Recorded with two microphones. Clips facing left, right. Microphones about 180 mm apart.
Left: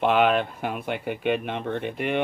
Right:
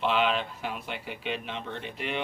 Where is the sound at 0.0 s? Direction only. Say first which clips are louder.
Left 6 dB; 55° left (ahead or behind).